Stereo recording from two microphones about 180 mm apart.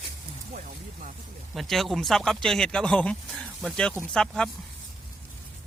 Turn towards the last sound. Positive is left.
turn(degrees=5)  # may be behind; listen again after turning